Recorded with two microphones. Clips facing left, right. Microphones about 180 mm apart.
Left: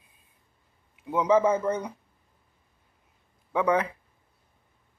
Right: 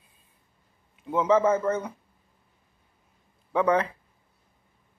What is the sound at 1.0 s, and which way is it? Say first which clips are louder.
Speech: even; 10° left (ahead or behind).